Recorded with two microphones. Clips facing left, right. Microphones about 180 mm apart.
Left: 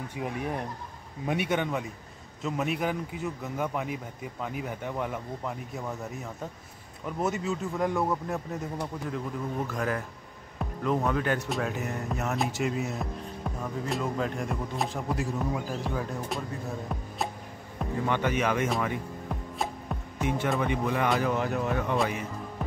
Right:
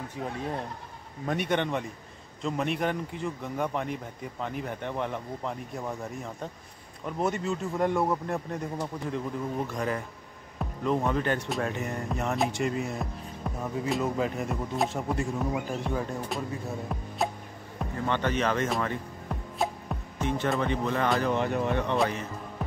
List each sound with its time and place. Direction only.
0.2 s speech: 15° left (ahead or behind)
7.1 s speech: centre (ahead or behind)
10.6 s music: centre (ahead or behind)
11.1 s speech: centre (ahead or behind)
18.0 s speech: 10° left (ahead or behind)
18.7 s music: 5° left (ahead or behind)
20.2 s speech: 10° left (ahead or behind)
22.6 s music: centre (ahead or behind)